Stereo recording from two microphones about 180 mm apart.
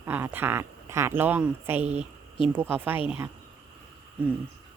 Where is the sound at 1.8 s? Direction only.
35° right (ahead or behind).